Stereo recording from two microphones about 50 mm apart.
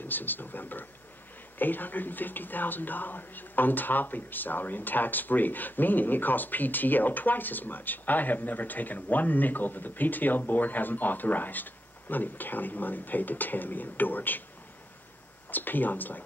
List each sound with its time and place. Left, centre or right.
0.0 s speech: left
15.5 s speech: left